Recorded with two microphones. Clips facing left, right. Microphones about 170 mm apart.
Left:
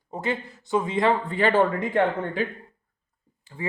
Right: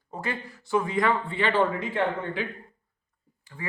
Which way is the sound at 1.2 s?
40° left (ahead or behind).